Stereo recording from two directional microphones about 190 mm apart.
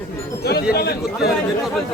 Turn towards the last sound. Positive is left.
turn(degrees=55)  # may be behind; listen again after turning